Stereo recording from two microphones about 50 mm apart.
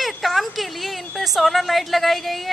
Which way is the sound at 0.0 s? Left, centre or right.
Centre.